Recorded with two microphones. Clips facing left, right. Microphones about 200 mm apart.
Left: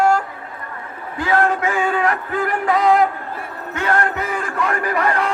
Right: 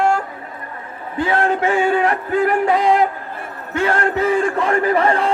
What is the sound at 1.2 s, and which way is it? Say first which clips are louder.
Music: even; 25° right (ahead or behind).